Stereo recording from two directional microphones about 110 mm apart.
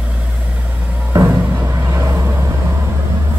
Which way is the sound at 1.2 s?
25° right (ahead or behind).